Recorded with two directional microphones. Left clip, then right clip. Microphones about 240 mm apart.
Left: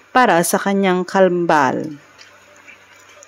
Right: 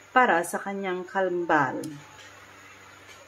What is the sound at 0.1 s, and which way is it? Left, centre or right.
A woman's voice, left.